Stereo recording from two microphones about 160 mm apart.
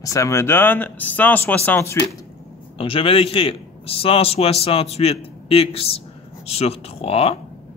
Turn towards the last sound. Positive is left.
turn(degrees=40)  # may be behind; listen again after turning